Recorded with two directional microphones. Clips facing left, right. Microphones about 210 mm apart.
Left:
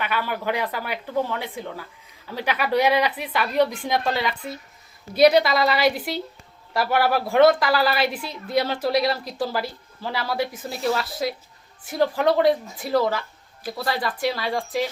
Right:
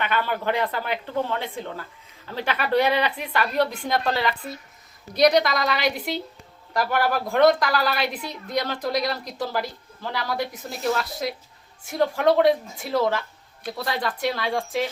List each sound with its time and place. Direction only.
0.0 s speech: 10° left (ahead or behind)